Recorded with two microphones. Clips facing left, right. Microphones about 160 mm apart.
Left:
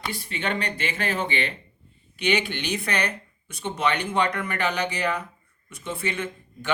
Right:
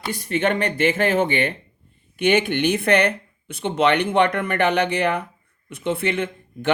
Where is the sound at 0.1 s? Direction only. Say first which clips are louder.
Right 11 dB; 45° right (ahead or behind).